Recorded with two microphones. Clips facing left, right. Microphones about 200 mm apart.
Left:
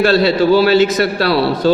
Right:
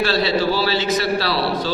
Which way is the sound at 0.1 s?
55° left (ahead or behind).